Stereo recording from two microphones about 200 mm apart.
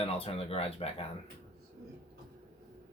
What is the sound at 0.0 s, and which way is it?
Speech, 30° left (ahead or behind).